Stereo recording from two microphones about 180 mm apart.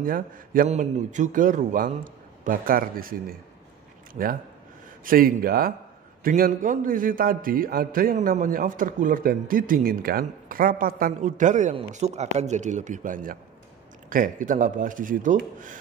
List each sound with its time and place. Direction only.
0.0 s a man's voice: 50° right (ahead or behind)